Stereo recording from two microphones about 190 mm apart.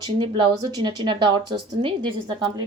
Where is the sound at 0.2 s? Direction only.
25° right (ahead or behind).